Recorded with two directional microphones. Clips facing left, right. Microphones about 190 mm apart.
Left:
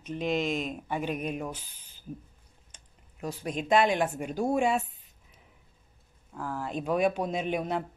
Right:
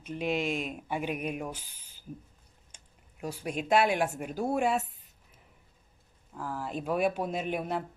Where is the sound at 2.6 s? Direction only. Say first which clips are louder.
Left 1 dB; 10° right (ahead or behind).